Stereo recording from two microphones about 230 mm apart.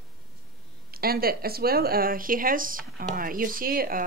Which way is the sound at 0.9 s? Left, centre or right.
Right.